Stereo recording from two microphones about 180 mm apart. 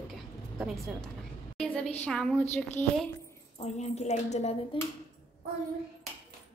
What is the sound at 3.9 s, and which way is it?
Speech, 40° left (ahead or behind).